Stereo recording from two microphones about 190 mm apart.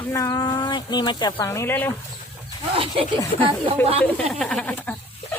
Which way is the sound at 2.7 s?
30° right (ahead or behind).